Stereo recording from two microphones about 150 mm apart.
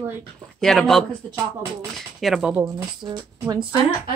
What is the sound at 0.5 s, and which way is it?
Speech, centre (ahead or behind).